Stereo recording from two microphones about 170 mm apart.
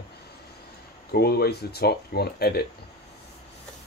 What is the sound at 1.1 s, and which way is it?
Speech, 65° left (ahead or behind).